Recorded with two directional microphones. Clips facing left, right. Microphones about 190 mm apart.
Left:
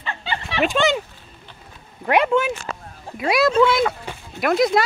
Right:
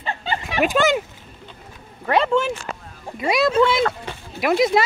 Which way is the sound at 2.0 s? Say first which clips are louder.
Left 1 dB; 10° left (ahead or behind).